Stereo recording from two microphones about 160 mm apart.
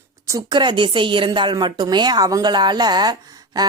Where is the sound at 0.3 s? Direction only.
25° right (ahead or behind).